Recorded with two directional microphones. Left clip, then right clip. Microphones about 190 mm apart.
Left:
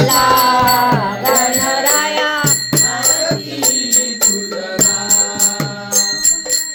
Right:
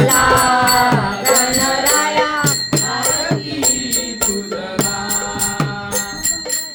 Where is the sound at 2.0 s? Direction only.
5° right (ahead or behind).